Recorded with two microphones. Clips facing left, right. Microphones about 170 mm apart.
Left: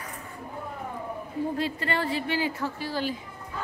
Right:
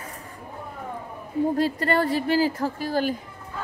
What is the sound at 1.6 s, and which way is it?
A woman's voice, 45° right (ahead or behind).